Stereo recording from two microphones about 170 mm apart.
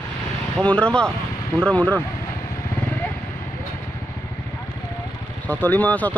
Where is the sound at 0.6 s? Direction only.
5° left (ahead or behind).